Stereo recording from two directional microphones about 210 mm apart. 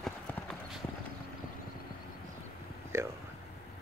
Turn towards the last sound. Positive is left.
turn(degrees=-15)  # may be behind; listen again after turning